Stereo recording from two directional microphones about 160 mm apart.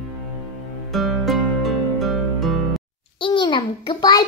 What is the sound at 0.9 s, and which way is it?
Music, centre (ahead or behind).